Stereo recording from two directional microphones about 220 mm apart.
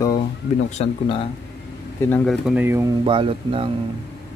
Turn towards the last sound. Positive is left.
turn(degrees=-25)  # may be behind; listen again after turning